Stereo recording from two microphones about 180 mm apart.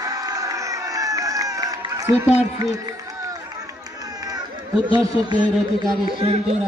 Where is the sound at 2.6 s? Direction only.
20° right (ahead or behind).